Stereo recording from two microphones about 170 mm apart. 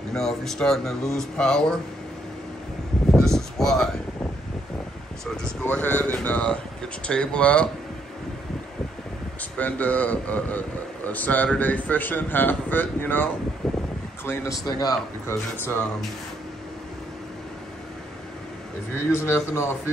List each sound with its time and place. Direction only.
0.1 s speech: 5° left (ahead or behind)
3.1 s a sound: 5° left (ahead or behind)
5.2 s a man's voice: 5° left (ahead or behind)
9.4 s a man's voice: 10° left (ahead or behind)
13.6 s a sound: centre (ahead or behind)
14.2 s a man's voice: 15° left (ahead or behind)
15.7 s a man's voice: 10° left (ahead or behind)
18.9 s a man's voice: 15° left (ahead or behind)